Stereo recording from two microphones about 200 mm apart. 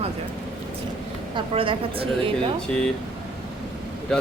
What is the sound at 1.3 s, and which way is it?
Speech, 25° right (ahead or behind).